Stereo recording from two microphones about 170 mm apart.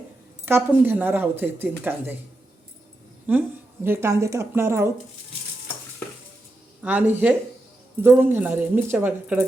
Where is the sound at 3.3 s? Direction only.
10° right (ahead or behind).